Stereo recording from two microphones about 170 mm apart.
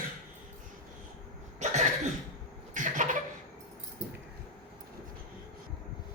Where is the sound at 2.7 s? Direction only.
50° right (ahead or behind).